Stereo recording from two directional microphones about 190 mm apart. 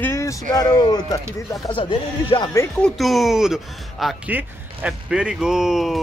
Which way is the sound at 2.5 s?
15° left (ahead or behind).